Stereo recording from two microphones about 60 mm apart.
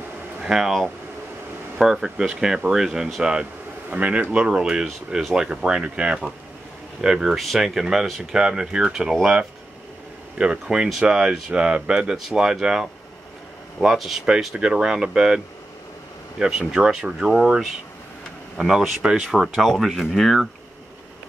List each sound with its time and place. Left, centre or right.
0.4 s speech: centre
1.8 s speech: centre